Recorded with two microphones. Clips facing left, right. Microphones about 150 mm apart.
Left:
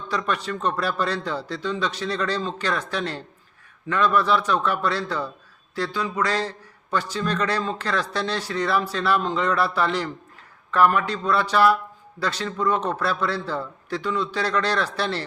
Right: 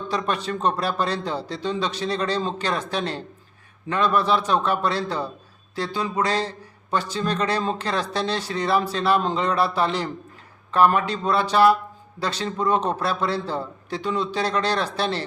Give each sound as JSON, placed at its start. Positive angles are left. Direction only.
{"t": 0.1, "sound": "speech", "side_deg": -25}